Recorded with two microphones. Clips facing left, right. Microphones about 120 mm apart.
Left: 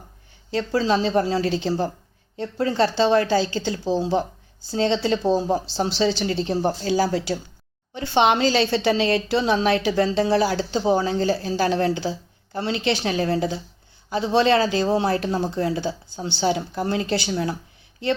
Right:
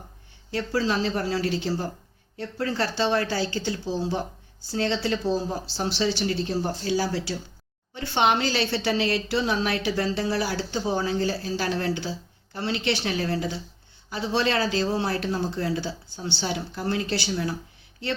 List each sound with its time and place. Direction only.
0.5 s a woman's voice: 25° left (ahead or behind)
6.9 s speech: 50° left (ahead or behind)
7.9 s a woman's voice: 25° left (ahead or behind)